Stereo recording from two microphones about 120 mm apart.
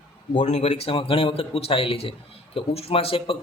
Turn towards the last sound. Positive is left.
turn(degrees=50)  # may be behind; listen again after turning